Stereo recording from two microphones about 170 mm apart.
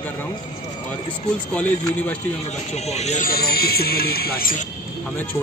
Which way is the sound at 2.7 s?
40° left (ahead or behind).